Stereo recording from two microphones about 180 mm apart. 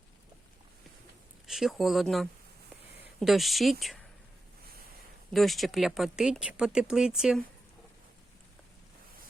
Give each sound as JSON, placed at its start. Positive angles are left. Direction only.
{"t": 1.5, "sound": "speech", "side_deg": 0}
{"t": 5.3, "sound": "speech", "side_deg": 0}